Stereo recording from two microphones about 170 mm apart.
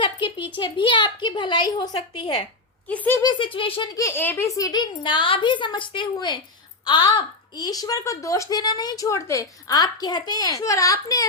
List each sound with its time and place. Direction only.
0.0 s a sound: 30° left (ahead or behind)
0.6 s a woman's voice: 30° left (ahead or behind)
2.9 s speech: 10° left (ahead or behind)
3.2 s a woman's voice: 30° left (ahead or behind)